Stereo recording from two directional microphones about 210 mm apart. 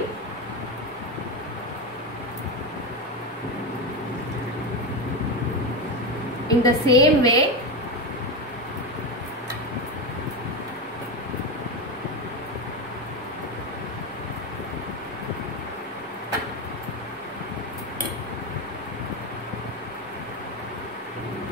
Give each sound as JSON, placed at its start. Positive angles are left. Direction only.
{"t": 6.6, "sound": "a woman's voice", "side_deg": 15}